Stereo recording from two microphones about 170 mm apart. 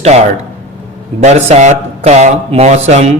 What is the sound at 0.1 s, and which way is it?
A man's voice, 40° right (ahead or behind).